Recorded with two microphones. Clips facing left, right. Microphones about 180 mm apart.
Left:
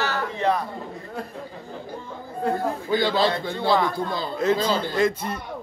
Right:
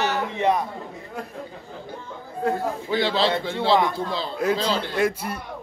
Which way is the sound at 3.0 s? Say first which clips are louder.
Even; centre (ahead or behind).